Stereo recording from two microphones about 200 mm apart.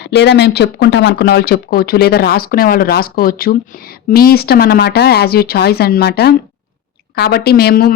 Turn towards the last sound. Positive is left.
turn(degrees=50)  # may be behind; listen again after turning